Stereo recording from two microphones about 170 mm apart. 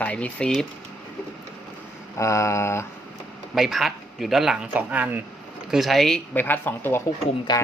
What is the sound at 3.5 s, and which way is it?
Speech, centre (ahead or behind).